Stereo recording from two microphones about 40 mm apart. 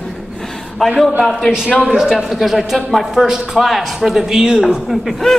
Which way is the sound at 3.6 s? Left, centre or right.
Centre.